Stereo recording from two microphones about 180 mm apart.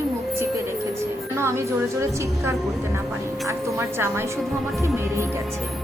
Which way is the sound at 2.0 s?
15° right (ahead or behind).